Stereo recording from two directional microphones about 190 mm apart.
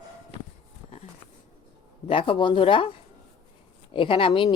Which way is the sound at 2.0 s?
30° left (ahead or behind).